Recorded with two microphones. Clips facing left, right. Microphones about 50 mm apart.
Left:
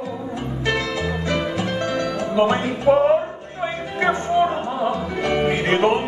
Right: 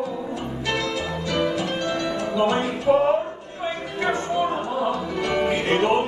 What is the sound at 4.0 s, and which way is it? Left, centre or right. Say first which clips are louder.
Music: left 5 dB; left.